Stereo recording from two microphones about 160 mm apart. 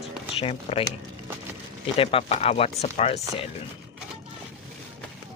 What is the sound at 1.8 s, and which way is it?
Speech, 35° left (ahead or behind).